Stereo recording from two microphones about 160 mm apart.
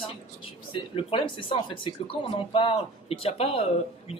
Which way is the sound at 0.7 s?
35° left (ahead or behind).